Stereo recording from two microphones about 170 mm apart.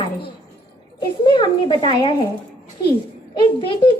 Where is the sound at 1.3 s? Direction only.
25° left (ahead or behind).